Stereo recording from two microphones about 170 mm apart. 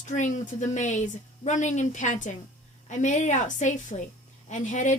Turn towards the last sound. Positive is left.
turn(degrees=45)  # may be behind; listen again after turning